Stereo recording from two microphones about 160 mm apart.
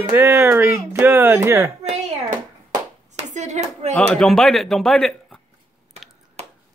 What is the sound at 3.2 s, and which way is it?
Clapping, 50° right (ahead or behind).